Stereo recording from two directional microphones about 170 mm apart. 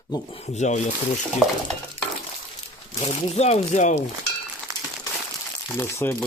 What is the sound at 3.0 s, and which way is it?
Speech, 35° left (ahead or behind).